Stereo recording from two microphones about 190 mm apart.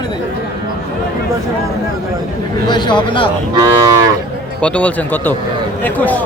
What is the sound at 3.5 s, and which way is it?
Moo, 20° right (ahead or behind).